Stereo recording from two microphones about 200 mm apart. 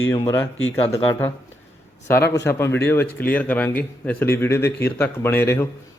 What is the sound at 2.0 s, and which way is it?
A man's voice, 10° left (ahead or behind).